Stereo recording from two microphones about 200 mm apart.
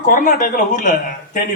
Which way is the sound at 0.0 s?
40° left (ahead or behind).